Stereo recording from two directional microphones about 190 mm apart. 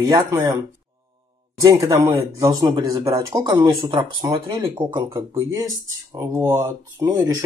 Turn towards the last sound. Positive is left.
turn(degrees=-20)  # may be behind; listen again after turning